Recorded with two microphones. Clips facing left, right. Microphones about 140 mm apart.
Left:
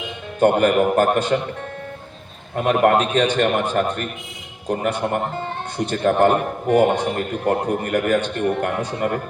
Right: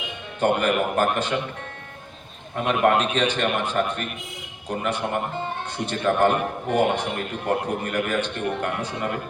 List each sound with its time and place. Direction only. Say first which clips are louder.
0.3 s a man's voice: left 6 dB; 45° left (ahead or behind)
2.6 s a man's voice: left 4 dB; 50° left (ahead or behind)